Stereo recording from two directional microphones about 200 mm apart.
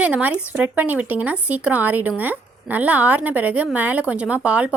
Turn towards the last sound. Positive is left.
turn(degrees=-5)  # may be behind; listen again after turning